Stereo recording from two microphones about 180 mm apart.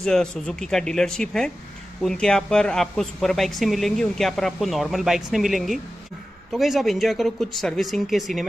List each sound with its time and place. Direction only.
0.0 s a woman's voice: 5° left (ahead or behind)